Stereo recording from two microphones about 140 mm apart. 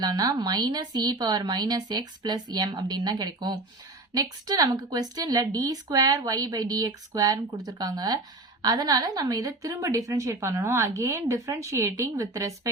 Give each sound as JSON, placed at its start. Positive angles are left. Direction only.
{"t": 0.0, "sound": "speech", "side_deg": -30}